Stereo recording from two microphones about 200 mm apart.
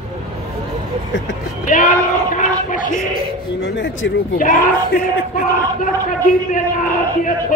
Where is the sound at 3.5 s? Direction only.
60° left (ahead or behind).